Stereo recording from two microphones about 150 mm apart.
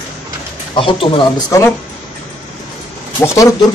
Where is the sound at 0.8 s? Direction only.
35° left (ahead or behind).